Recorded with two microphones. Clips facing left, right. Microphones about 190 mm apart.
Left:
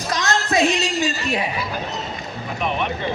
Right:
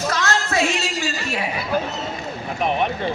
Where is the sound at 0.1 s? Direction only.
15° left (ahead or behind).